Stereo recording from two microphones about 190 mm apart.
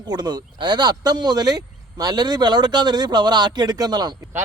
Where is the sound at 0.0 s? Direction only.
20° right (ahead or behind).